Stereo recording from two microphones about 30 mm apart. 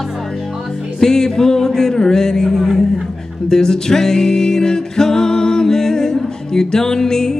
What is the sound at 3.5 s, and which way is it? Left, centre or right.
Music, centre.